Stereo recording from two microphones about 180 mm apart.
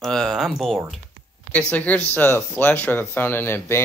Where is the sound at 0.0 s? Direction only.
Centre (ahead or behind).